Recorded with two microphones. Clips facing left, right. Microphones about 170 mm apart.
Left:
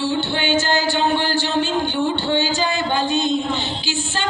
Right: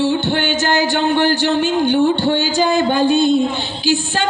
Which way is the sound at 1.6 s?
15° right (ahead or behind).